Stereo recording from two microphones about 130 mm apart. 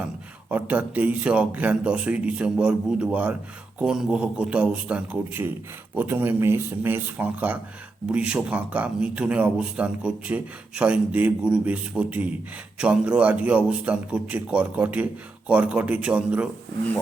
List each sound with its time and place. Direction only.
0.5 s speech: 10° right (ahead or behind)